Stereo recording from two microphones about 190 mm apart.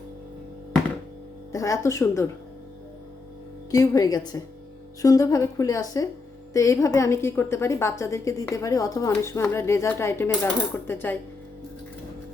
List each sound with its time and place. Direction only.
1.5 s a woman's voice: 15° left (ahead or behind)
3.7 s a woman's voice: 20° left (ahead or behind)